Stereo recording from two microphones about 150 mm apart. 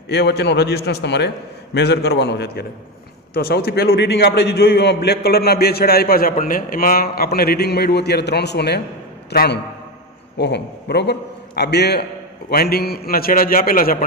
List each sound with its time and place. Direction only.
0.1 s a man's voice: 90° left; by 13.9 s 70° left (ahead or behind)